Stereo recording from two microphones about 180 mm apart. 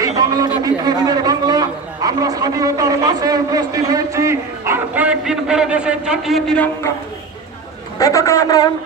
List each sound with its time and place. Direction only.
0.2 s chatter: 20° right (ahead or behind)
0.6 s a man's voice: 20° right (ahead or behind); by 6.7 s centre (ahead or behind)
7.9 s a man's voice: 20° left (ahead or behind)